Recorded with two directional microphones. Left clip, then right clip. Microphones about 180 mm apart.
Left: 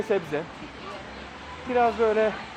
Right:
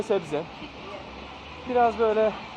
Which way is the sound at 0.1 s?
5° right (ahead or behind).